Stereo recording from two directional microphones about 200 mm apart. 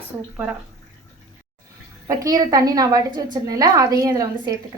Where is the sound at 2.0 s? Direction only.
20° right (ahead or behind).